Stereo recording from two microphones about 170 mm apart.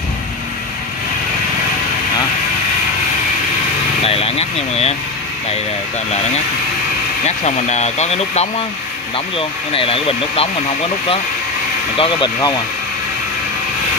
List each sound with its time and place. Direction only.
4.0 s vehicle: 35° left (ahead or behind)
7.2 s speech: 40° left (ahead or behind)
12.0 s speech: 25° left (ahead or behind)